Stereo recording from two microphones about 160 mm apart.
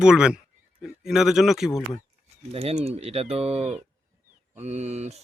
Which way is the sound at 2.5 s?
40° right (ahead or behind).